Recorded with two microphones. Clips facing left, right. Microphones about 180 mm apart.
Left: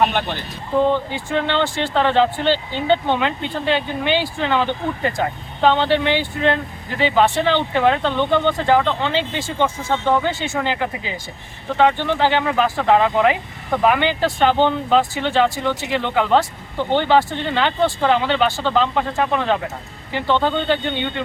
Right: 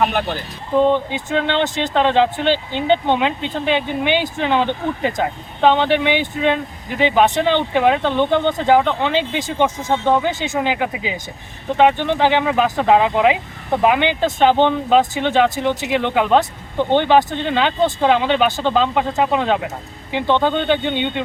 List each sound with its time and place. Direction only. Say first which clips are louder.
0.9 s speech: right 2 dB; 20° right (ahead or behind)